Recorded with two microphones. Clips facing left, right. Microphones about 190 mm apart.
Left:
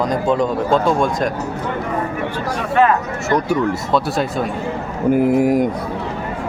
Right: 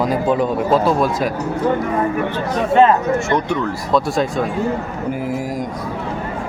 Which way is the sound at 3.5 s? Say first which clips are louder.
Left 1 dB; centre (ahead or behind).